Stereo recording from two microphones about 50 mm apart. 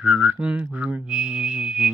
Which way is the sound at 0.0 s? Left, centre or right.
Right.